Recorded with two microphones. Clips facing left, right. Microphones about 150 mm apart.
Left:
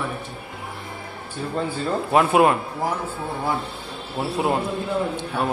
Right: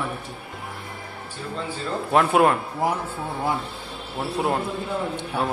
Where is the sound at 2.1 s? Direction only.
5° left (ahead or behind).